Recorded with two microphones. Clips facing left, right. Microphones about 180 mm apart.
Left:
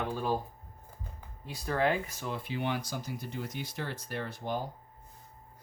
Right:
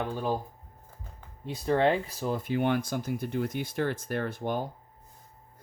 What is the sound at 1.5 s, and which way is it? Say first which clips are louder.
Speech: right 5 dB; 25° right (ahead or behind).